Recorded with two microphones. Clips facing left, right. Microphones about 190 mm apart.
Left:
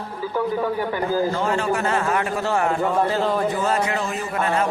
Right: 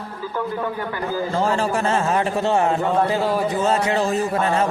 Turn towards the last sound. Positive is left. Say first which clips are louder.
# right 3 dB
turn(degrees=-30)  # may be behind; listen again after turning